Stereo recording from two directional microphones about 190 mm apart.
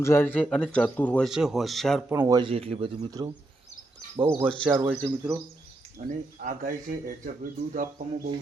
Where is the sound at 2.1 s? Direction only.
15° right (ahead or behind).